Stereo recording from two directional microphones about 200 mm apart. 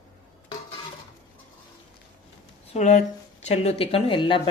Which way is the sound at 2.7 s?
35° left (ahead or behind).